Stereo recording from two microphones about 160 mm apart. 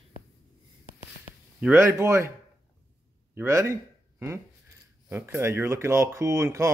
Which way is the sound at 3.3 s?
15° right (ahead or behind).